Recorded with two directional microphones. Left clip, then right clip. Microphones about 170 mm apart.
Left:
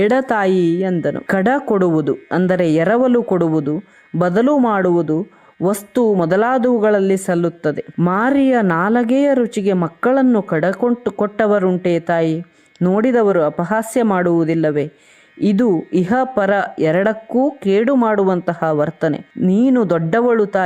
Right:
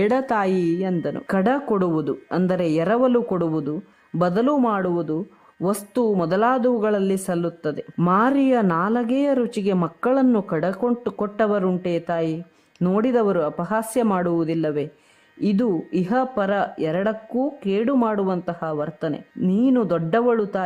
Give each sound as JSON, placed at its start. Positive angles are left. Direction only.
{"t": 0.0, "sound": "speech", "side_deg": 20}